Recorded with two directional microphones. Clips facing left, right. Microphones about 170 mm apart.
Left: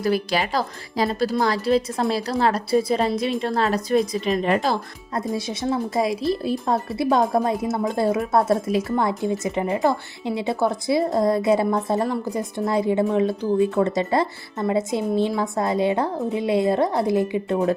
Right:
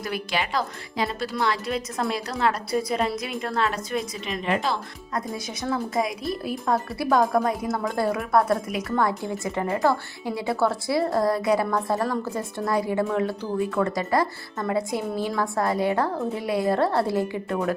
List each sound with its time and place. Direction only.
0.0 s speech: 35° left (ahead or behind); by 17.7 s 20° left (ahead or behind)